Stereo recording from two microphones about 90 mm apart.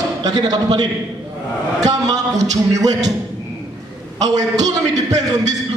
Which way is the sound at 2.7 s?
45° right (ahead or behind).